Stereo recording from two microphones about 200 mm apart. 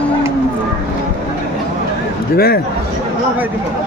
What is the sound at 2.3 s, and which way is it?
Speech, 50° left (ahead or behind).